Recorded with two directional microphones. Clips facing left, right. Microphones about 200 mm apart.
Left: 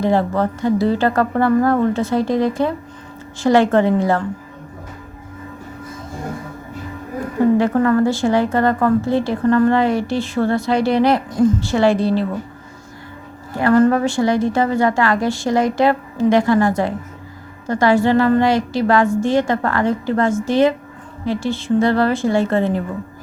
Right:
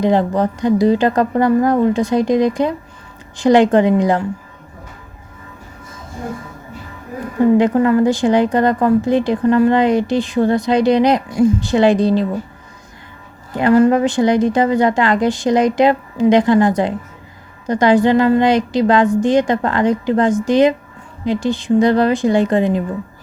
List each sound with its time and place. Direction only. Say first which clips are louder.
0.0 s speech: right 2 dB; 15° right (ahead or behind)
7.6 s speech: right 2 dB; 15° right (ahead or behind)
13.6 s a woman's voice: right 2 dB; 15° right (ahead or behind)